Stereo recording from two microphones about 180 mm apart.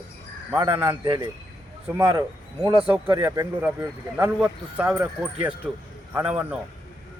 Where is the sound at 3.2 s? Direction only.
10° right (ahead or behind).